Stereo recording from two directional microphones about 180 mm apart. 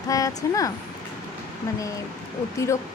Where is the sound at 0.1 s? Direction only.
20° left (ahead or behind).